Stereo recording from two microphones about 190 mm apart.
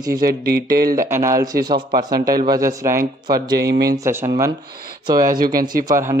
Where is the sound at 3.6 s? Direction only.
55° right (ahead or behind).